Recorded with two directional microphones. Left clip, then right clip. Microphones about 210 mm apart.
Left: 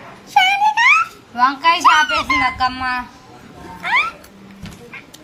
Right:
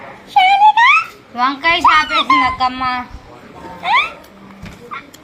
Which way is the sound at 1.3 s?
40° left (ahead or behind).